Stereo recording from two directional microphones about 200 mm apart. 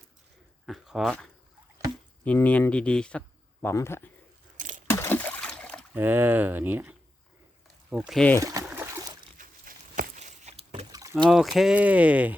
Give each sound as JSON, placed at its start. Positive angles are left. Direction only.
{"t": 0.6, "sound": "speech", "side_deg": 0}
{"t": 4.5, "sound": "a sound", "side_deg": -40}
{"t": 4.9, "sound": "a sound", "side_deg": 10}
{"t": 5.9, "sound": "speech", "side_deg": -10}
{"t": 8.4, "sound": "speech", "side_deg": -15}
{"t": 8.6, "sound": "a sound", "side_deg": -10}
{"t": 9.4, "sound": "rowboat", "side_deg": -45}
{"t": 10.9, "sound": "boat", "side_deg": -20}
{"t": 11.3, "sound": "speech", "side_deg": 0}